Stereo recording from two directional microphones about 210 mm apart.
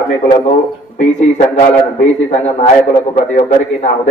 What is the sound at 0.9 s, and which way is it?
Speech, 35° left (ahead or behind).